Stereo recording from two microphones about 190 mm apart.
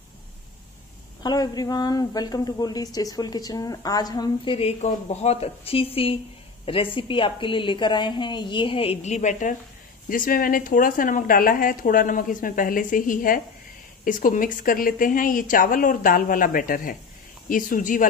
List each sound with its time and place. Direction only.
1.2 s a woman's voice: 20° left (ahead or behind); by 18.0 s 45° left (ahead or behind)